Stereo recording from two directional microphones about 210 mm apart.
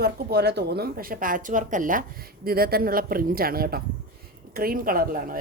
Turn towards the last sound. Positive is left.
turn(degrees=-45)  # may be behind; listen again after turning